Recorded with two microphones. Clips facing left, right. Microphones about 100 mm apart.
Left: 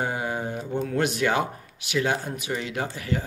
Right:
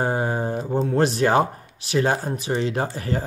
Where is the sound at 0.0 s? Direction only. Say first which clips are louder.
Right 5 dB; 35° right (ahead or behind).